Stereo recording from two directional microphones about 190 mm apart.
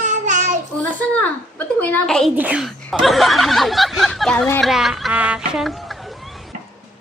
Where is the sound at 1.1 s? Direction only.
10° left (ahead or behind).